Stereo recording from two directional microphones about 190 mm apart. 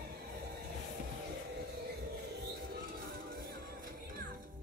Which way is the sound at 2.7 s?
50° right (ahead or behind).